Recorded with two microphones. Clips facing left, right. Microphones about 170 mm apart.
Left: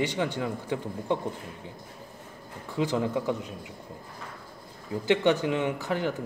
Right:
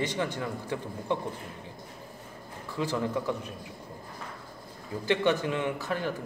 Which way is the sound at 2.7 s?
15° left (ahead or behind).